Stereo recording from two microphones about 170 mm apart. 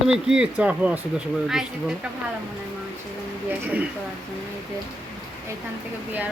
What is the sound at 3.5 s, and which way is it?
Speech, 10° right (ahead or behind).